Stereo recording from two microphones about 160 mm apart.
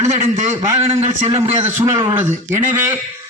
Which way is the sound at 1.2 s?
40° right (ahead or behind).